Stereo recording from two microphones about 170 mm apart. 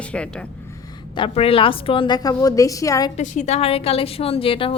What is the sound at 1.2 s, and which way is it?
A woman's voice, 35° left (ahead or behind).